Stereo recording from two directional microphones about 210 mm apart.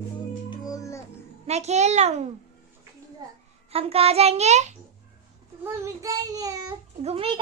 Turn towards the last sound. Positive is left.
turn(degrees=-30)  # may be behind; listen again after turning